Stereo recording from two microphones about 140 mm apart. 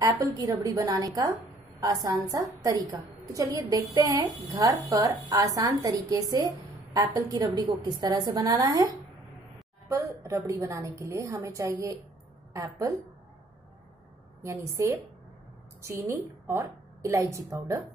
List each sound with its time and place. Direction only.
0.0 s speech: 25° right (ahead or behind)
14.4 s a woman's voice: 20° right (ahead or behind)